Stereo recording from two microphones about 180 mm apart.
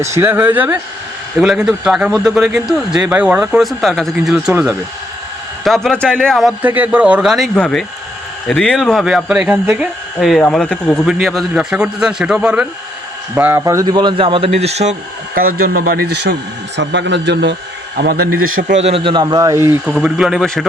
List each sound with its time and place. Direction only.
0.1 s speech: 10° right (ahead or behind)
5.6 s a man's voice: centre (ahead or behind); by 14.9 s 35° right (ahead or behind)
15.4 s speech: 55° right (ahead or behind)
16.7 s a man's voice: 75° right (ahead or behind)
17.9 s a man's voice: 65° right (ahead or behind)
18.8 s a man's voice: 30° right (ahead or behind); by 19.7 s 15° right (ahead or behind)
19.8 s speech: centre (ahead or behind)